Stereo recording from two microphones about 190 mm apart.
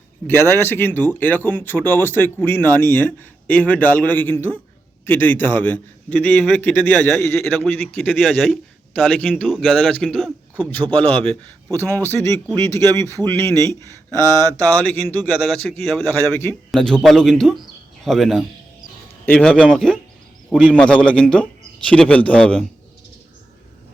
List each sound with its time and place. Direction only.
0.3 s a man's voice: 10° left (ahead or behind)
12.0 s a man's voice: 15° left (ahead or behind)
16.0 s a man's voice: 10° left (ahead or behind)
16.7 s a man's voice: centre (ahead or behind)